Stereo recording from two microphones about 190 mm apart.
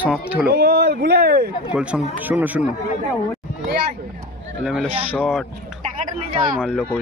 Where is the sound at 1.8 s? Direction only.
5° right (ahead or behind).